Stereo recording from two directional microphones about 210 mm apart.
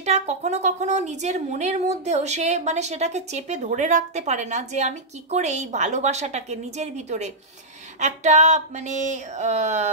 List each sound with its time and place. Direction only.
0.0 s speech: 35° right (ahead or behind)